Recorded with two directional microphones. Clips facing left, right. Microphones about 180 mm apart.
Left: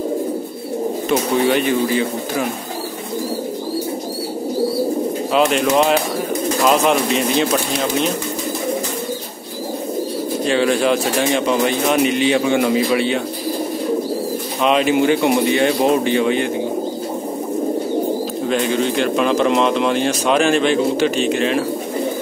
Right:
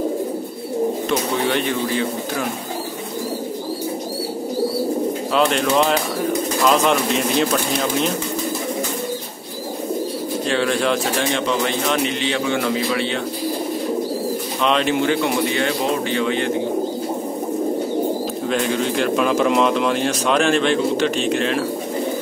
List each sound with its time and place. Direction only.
1.5 s speech: 5° left (ahead or behind)
5.3 s speech: 5° left (ahead or behind)
10.4 s speech: 5° left (ahead or behind)
14.6 s speech: 5° left (ahead or behind)
18.5 s speech: centre (ahead or behind)